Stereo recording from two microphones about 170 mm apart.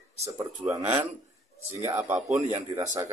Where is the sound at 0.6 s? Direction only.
10° right (ahead or behind).